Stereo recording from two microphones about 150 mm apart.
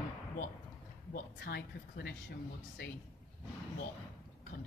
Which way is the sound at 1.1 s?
90° left.